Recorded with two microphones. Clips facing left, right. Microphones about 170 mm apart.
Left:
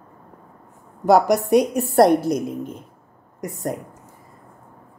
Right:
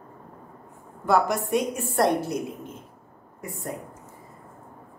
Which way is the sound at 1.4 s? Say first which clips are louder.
Left 8 dB; 70° left (ahead or behind).